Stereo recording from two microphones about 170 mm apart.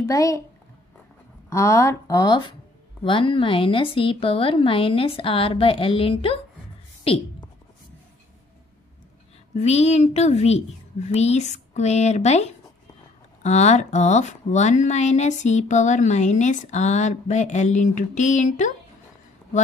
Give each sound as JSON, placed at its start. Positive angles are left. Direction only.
{"t": 0.0, "sound": "a child's voice", "side_deg": 20}
{"t": 1.5, "sound": "a woman's voice", "side_deg": 15}
{"t": 9.6, "sound": "a woman's voice", "side_deg": 40}